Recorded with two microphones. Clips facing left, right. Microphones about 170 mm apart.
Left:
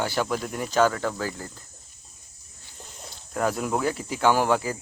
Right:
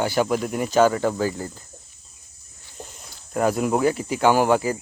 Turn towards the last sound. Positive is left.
turn(degrees=-5)  # may be behind; listen again after turning